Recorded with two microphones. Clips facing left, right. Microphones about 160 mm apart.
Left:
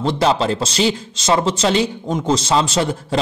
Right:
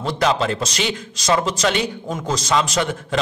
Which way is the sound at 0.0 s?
30° left (ahead or behind).